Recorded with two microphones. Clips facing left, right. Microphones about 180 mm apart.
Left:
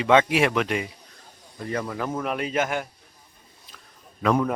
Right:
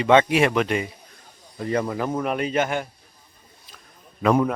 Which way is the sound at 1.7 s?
25° right (ahead or behind).